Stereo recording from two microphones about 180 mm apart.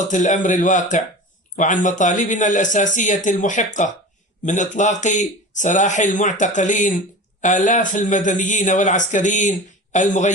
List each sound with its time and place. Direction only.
0.1 s a man's voice: 45° left (ahead or behind)